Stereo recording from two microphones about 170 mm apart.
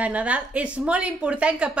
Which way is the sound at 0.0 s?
10° right (ahead or behind).